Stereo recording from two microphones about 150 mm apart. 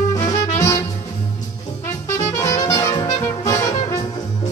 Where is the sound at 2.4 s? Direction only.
20° left (ahead or behind).